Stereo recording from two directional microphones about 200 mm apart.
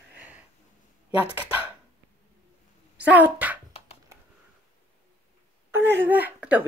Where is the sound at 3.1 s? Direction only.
10° right (ahead or behind).